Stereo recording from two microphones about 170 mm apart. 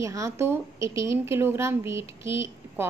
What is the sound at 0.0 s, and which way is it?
A woman's voice, 15° right (ahead or behind).